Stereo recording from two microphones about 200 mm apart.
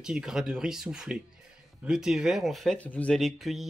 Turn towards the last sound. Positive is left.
turn(degrees=0)  # may be behind; listen again after turning